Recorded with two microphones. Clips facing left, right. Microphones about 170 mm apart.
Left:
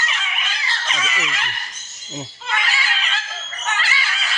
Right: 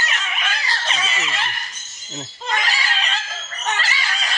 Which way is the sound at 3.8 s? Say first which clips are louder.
Even; 40° right (ahead or behind).